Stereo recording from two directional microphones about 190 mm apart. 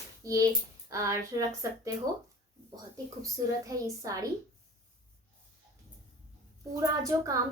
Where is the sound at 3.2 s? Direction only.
15° right (ahead or behind).